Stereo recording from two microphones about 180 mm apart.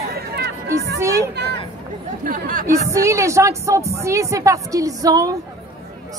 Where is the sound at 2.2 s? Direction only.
50° right (ahead or behind).